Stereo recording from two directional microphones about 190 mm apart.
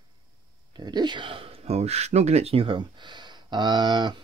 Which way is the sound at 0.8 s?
20° right (ahead or behind).